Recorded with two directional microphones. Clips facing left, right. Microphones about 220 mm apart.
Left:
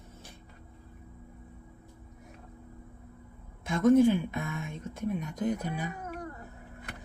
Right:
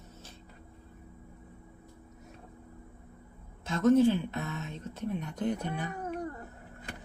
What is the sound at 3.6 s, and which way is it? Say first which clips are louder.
Speech: left 1 dB; 15° left (ahead or behind).